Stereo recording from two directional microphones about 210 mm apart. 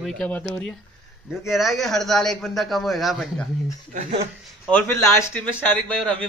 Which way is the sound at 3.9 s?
35° right (ahead or behind).